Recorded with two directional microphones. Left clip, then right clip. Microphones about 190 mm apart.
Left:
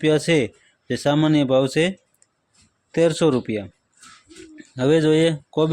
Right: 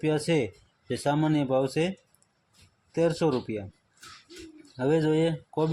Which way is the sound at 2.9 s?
35° left (ahead or behind).